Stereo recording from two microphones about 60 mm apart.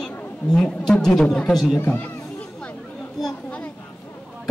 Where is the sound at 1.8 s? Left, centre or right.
Left.